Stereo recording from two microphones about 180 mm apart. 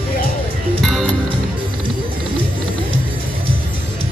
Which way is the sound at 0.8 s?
Centre (ahead or behind).